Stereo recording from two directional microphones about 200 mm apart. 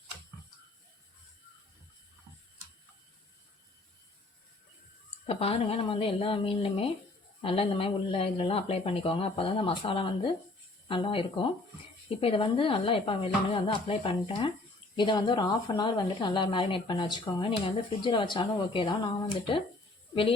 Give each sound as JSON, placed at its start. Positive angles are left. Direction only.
{"t": 5.2, "sound": "speech", "side_deg": 30}